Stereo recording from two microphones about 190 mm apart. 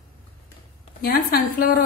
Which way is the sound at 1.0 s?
50° left (ahead or behind).